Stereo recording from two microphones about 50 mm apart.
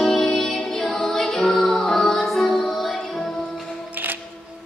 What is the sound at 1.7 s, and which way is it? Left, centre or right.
Music, centre.